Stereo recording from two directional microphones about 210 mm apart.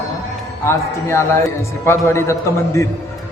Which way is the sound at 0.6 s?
10° left (ahead or behind).